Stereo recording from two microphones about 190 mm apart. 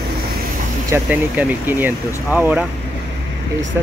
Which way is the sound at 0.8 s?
10° right (ahead or behind).